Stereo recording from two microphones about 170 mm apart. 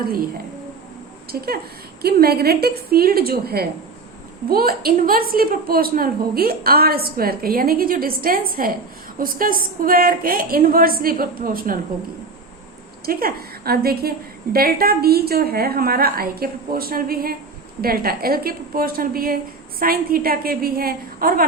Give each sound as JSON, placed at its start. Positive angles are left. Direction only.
{"t": 1.3, "sound": "a woman's voice", "side_deg": -65}
{"t": 13.1, "sound": "a woman's voice", "side_deg": -60}